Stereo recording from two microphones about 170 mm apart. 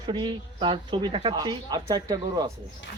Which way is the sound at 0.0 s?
25° right (ahead or behind).